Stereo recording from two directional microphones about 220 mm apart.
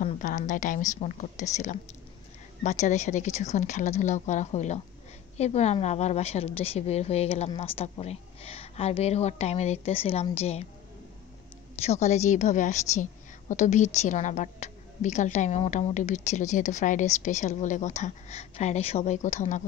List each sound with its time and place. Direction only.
0.0 s a woman's voice: 35° left (ahead or behind)
11.8 s a woman's voice: 30° left (ahead or behind)